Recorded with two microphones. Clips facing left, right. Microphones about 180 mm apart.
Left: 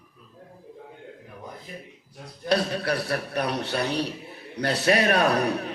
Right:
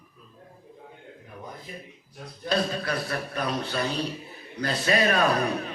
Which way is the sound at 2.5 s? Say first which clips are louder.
Left 3 dB; 70° left (ahead or behind).